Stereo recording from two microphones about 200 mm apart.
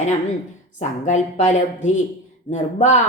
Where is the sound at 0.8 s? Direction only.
35° left (ahead or behind).